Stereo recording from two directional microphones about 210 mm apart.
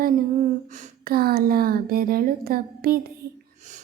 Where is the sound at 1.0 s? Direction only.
45° right (ahead or behind).